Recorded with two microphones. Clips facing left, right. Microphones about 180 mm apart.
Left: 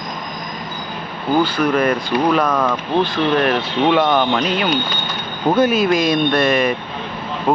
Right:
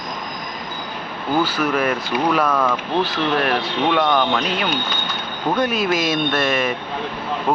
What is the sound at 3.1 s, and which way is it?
Speech, centre (ahead or behind).